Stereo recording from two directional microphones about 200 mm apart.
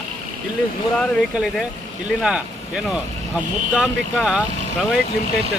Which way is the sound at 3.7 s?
5° right (ahead or behind).